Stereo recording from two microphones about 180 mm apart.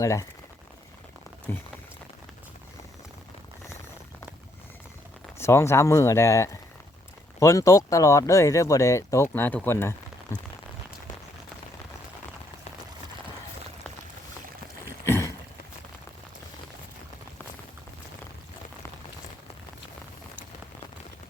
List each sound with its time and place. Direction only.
0.0 s speech: 20° left (ahead or behind)
1.5 s speech: 10° left (ahead or behind)
5.4 s speech: 15° left (ahead or behind)
15.0 s boat: 15° left (ahead or behind)